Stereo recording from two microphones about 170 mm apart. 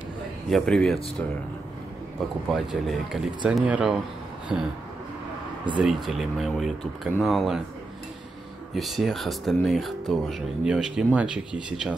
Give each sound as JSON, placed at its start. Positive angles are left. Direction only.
{"t": 0.5, "sound": "speech", "side_deg": 0}
{"t": 2.1, "sound": "speech", "side_deg": 0}
{"t": 6.0, "sound": "speech", "side_deg": 0}
{"t": 8.7, "sound": "speech", "side_deg": 0}